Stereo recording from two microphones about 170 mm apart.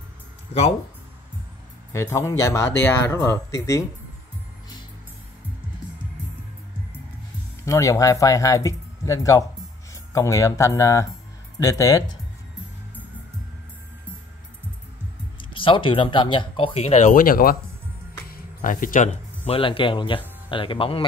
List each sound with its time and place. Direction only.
0.5 s speech: 35° left (ahead or behind)
1.9 s speech: 15° left (ahead or behind)
7.6 s speech: 20° left (ahead or behind)
15.5 s speech: 30° left (ahead or behind); by 17.6 s 55° left (ahead or behind)
18.3 s music: 55° left (ahead or behind)
19.4 s speech: 35° left (ahead or behind)